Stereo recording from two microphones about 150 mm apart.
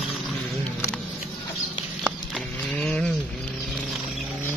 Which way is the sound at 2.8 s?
10° left (ahead or behind).